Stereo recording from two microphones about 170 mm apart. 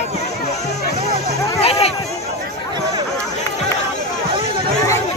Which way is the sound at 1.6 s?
35° left (ahead or behind).